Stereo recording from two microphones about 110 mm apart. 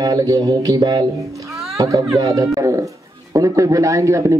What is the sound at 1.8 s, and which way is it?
A man's voice, 30° right (ahead or behind).